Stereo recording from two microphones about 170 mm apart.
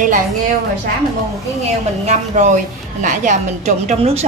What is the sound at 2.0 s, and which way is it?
A woman's voice, 45° right (ahead or behind).